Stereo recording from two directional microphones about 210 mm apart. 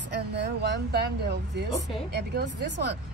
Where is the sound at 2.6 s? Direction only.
55° right (ahead or behind).